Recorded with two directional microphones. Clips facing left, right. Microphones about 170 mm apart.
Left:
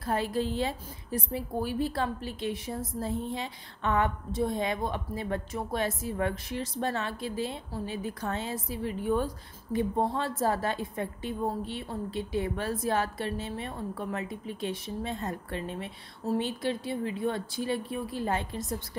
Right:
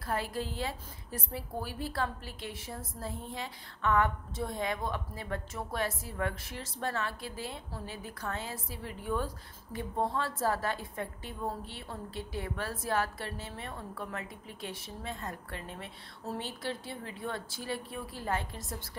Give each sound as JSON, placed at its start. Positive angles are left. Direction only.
{"t": 0.0, "sound": "a woman's voice", "side_deg": 25}